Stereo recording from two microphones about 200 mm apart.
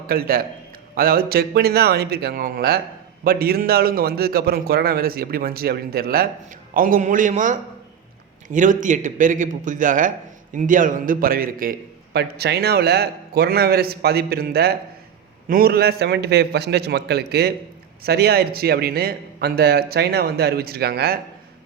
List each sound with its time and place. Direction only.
0.1 s a man's voice: 50° right (ahead or behind)